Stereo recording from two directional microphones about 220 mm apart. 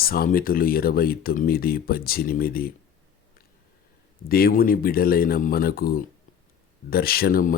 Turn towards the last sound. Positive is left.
turn(degrees=40)  # may be behind; listen again after turning